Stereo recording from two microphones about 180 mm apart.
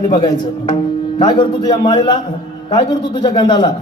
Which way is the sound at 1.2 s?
25° left (ahead or behind).